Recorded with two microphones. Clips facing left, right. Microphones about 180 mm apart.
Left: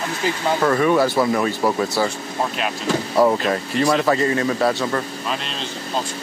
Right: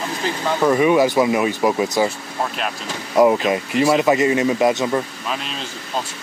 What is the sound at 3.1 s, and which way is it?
Speech, 10° right (ahead or behind).